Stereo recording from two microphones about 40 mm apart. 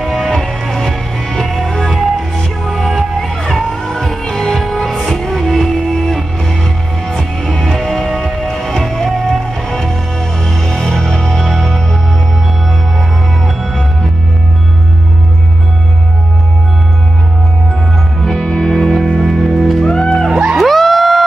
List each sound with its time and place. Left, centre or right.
0.0 s music: centre
13.6 s music: centre
18.2 s music: centre
19.8 s music: centre
20.5 s music: centre